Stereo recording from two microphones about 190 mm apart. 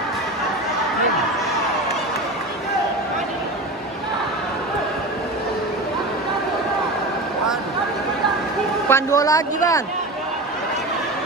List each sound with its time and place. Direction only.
8.8 s a man's voice: 15° left (ahead or behind)